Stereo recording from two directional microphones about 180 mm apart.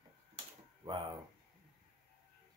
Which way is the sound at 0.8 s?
25° right (ahead or behind).